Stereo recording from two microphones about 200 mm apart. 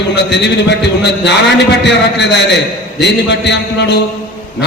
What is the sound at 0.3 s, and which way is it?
A man's voice, 60° left (ahead or behind).